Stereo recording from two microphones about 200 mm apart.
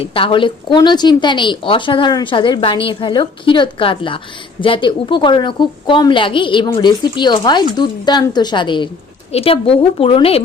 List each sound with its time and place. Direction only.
0.0 s a woman's voice: 25° left (ahead or behind)